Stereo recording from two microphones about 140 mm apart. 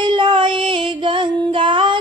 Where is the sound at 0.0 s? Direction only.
35° right (ahead or behind).